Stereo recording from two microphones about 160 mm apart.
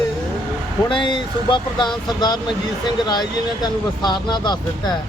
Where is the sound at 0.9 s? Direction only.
30° left (ahead or behind).